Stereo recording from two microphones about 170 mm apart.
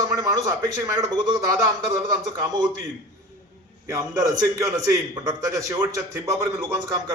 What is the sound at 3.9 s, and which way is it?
A man's voice, 20° right (ahead or behind).